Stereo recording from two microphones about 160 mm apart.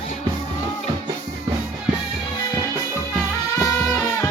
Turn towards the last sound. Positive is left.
turn(degrees=20)  # may be behind; listen again after turning